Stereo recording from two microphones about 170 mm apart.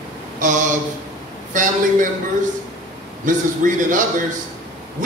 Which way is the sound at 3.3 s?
50° right (ahead or behind).